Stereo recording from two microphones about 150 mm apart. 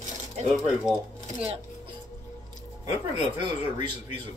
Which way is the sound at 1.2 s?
40° right (ahead or behind).